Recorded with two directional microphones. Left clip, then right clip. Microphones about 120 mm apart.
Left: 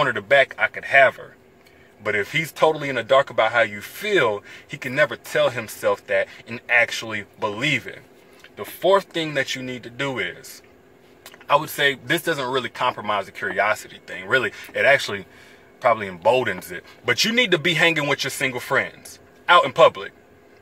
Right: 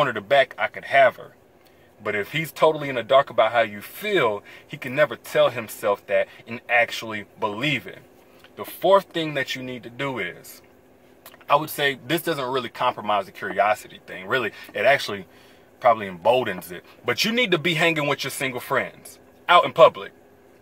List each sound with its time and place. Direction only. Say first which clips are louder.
0.0 s speech: left 2 dB; 20° right (ahead or behind)
8.5 s speech: even; 25° right (ahead or behind)
9.1 s speech: left 2 dB; 10° right (ahead or behind)
11.4 s speech: left 2 dB; 20° right (ahead or behind)